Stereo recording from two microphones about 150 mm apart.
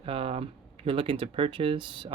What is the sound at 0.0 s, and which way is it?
Speech, 40° right (ahead or behind).